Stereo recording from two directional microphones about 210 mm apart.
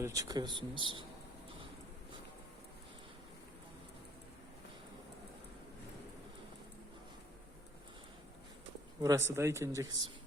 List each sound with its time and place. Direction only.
0.0 s speech: 15° right (ahead or behind)
9.0 s speech: 15° right (ahead or behind)